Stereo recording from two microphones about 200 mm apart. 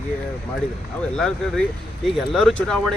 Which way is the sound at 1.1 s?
Centre (ahead or behind).